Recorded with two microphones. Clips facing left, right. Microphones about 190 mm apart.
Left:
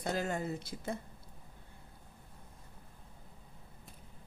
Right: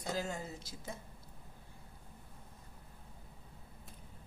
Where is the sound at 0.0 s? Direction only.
60° left (ahead or behind).